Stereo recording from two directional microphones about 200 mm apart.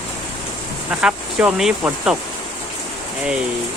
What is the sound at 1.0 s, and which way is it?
Speech, 5° right (ahead or behind).